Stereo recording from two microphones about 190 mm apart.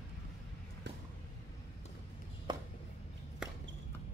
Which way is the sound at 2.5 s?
25° right (ahead or behind).